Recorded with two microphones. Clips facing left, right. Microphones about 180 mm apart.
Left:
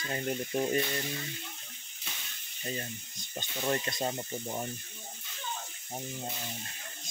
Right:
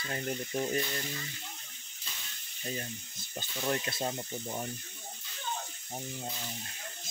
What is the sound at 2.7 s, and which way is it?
Speech, centre (ahead or behind).